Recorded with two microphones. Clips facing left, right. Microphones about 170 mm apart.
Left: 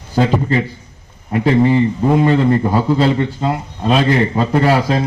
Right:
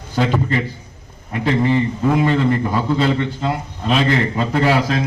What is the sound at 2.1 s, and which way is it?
A man's voice, 35° left (ahead or behind).